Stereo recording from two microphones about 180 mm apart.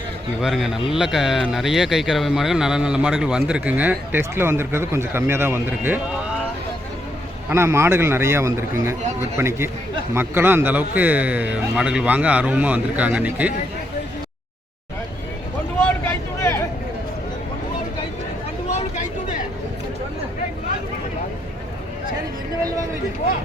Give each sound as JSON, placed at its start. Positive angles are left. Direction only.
{"t": 0.4, "sound": "speech", "side_deg": 0}
{"t": 7.5, "sound": "a man's voice", "side_deg": -15}
{"t": 16.0, "sound": "vehicle", "side_deg": 15}
{"t": 18.7, "sound": "vehicle", "side_deg": 40}